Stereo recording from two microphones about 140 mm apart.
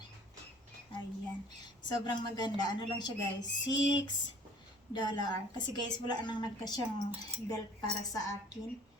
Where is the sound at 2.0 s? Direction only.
30° left (ahead or behind).